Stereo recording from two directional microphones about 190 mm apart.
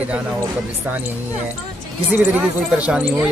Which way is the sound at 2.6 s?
5° right (ahead or behind).